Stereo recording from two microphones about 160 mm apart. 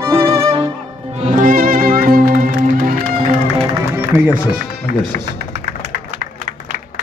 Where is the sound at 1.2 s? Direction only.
60° right (ahead or behind).